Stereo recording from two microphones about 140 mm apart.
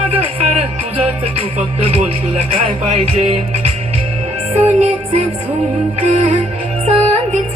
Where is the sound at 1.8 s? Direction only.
45° right (ahead or behind).